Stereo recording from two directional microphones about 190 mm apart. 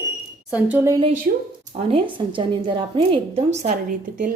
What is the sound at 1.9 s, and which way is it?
A woman's voice, 25° right (ahead or behind).